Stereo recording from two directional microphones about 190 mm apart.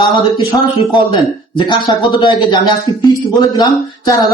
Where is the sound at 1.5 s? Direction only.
25° left (ahead or behind).